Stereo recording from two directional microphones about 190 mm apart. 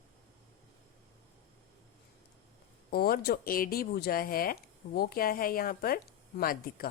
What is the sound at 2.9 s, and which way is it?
Speech, 55° left (ahead or behind).